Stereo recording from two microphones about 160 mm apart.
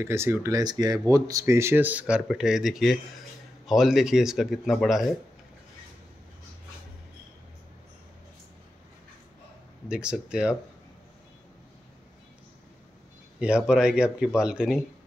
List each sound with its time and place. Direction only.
0.0 s speech: 15° right (ahead or behind)
9.8 s speech: 5° right (ahead or behind)
13.4 s speech: 5° right (ahead or behind)